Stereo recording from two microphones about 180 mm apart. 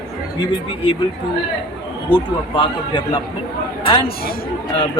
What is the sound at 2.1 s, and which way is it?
Speech, 25° left (ahead or behind).